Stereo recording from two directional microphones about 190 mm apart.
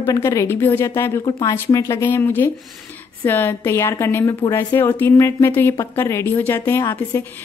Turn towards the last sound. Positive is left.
turn(degrees=10)  # may be behind; listen again after turning